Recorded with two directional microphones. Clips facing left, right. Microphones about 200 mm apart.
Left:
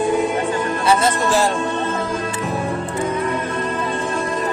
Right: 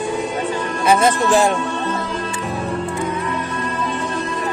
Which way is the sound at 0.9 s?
15° right (ahead or behind).